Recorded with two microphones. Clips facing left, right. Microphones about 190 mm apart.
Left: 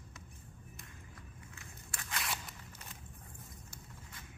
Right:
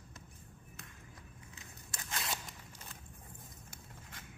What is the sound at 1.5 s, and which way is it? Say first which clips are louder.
Scissors: even; 20° right (ahead or behind).